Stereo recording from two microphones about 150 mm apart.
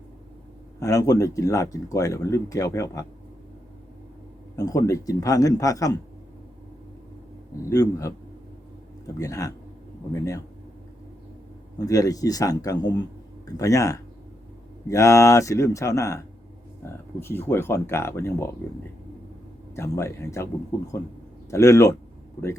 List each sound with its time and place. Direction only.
0.8 s speech: 20° left (ahead or behind)
4.5 s speech: 25° left (ahead or behind)
7.6 s speech: 20° left (ahead or behind)
9.1 s speech: 20° left (ahead or behind)
11.9 s speech: 25° left (ahead or behind)
19.7 s speech: 20° left (ahead or behind)